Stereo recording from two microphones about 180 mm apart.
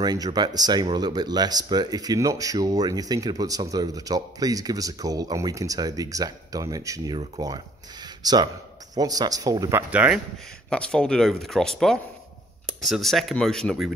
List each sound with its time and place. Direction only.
0.0 s speech: 20° right (ahead or behind)
10.7 s speech: 5° left (ahead or behind)